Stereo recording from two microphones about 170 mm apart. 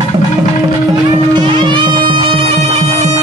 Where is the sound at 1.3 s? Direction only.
25° right (ahead or behind).